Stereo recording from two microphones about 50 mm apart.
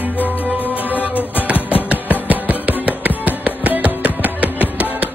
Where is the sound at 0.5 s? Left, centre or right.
Right.